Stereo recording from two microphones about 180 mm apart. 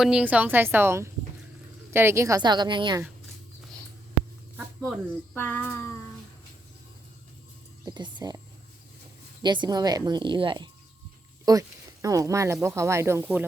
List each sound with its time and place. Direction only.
0.0 s a woman's voice: 5° right (ahead or behind); by 3.0 s 25° right (ahead or behind)
4.9 s a child's voice: 10° left (ahead or behind)
7.9 s speech: 25° right (ahead or behind)
9.4 s a woman's voice: 25° right (ahead or behind)